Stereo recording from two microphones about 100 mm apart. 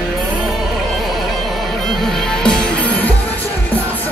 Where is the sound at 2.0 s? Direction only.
5° left (ahead or behind).